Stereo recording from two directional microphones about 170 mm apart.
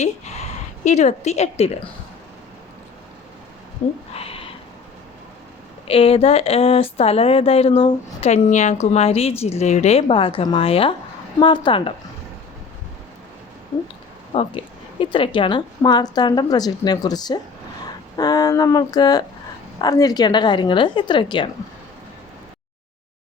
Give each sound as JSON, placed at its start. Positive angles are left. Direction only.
{"t": 0.9, "sound": "speech", "side_deg": 40}
{"t": 4.1, "sound": "a sound", "side_deg": 35}
{"t": 5.9, "sound": "a woman's voice", "side_deg": 35}
{"t": 14.3, "sound": "a woman's voice", "side_deg": 30}